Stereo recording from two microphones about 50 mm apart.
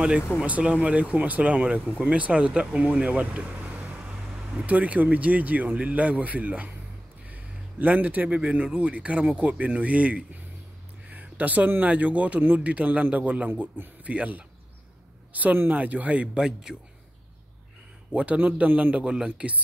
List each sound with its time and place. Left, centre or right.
0.4 s a man's voice: right
11.1 s a sound: right
11.8 s speech: right
16.3 s speech: centre
18.1 s speech: right
18.9 s speech: centre